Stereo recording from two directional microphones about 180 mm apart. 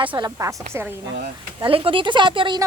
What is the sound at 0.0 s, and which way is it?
Speech, 25° right (ahead or behind).